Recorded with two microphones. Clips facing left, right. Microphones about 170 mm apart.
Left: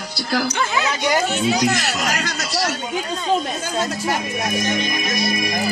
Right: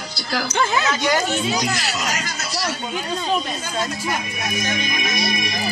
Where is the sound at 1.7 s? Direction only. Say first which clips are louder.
Left 3 dB; 55° left (ahead or behind).